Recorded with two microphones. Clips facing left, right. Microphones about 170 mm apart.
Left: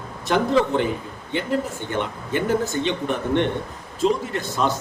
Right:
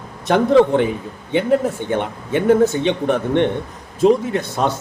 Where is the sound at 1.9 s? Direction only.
60° right (ahead or behind).